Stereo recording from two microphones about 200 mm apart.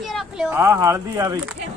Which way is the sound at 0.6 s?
15° right (ahead or behind).